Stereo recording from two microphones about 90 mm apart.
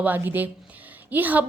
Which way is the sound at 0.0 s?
20° right (ahead or behind).